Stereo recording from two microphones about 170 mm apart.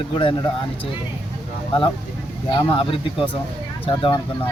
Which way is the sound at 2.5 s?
30° left (ahead or behind).